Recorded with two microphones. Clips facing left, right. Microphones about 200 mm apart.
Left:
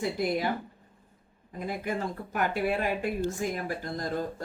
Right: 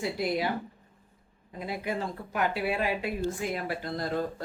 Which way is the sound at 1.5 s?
50° left (ahead or behind).